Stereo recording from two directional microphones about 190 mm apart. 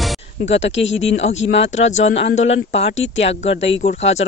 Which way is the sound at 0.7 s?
80° left.